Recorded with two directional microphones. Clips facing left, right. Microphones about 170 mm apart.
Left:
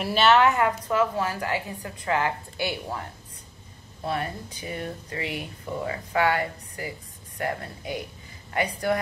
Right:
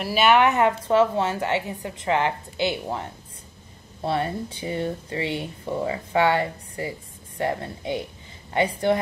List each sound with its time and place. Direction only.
0.0 s speech: 10° right (ahead or behind); by 9.0 s 25° right (ahead or behind)